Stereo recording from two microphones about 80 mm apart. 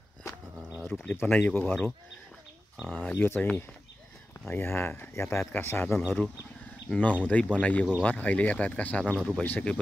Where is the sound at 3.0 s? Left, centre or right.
Left.